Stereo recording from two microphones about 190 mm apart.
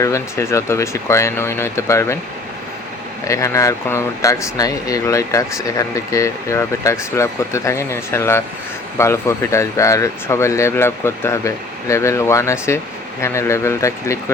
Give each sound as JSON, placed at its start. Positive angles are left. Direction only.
{"t": 0.0, "sound": "speech", "side_deg": 15}
{"t": 3.2, "sound": "speech", "side_deg": 15}